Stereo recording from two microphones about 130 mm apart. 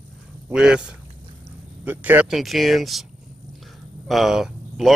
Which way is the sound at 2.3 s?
Centre (ahead or behind).